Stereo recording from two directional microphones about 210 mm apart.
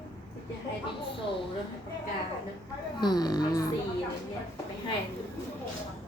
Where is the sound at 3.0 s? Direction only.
20° left (ahead or behind).